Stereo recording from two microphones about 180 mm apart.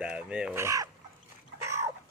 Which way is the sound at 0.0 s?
5° right (ahead or behind).